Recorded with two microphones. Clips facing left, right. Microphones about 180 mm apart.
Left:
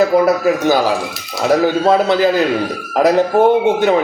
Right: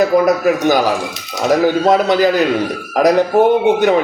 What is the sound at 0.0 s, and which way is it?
Speech, 15° right (ahead or behind).